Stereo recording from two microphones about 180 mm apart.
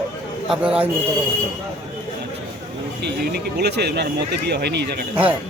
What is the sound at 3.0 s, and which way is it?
Speech, 65° right (ahead or behind).